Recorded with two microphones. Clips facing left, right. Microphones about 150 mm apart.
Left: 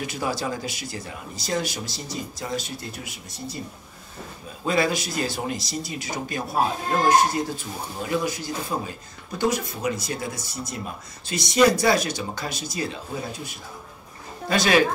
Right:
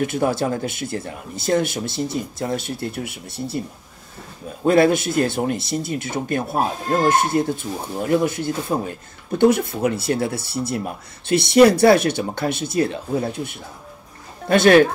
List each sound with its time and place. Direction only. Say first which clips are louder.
0.0 s speech: right 7 dB; 55° right (ahead or behind)
4.6 s speech: right 8 dB; 55° right (ahead or behind)